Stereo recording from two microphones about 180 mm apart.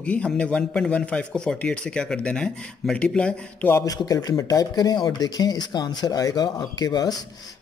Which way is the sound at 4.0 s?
20° left (ahead or behind).